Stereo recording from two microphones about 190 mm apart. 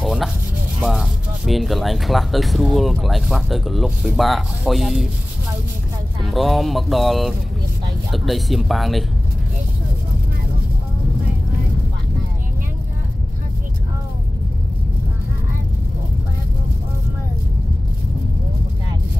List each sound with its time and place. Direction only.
0.0 s a sound: centre (ahead or behind)
0.7 s speech: 5° right (ahead or behind)
6.3 s speech: centre (ahead or behind)